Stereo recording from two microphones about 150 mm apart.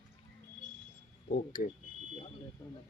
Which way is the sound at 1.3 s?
65° left (ahead or behind).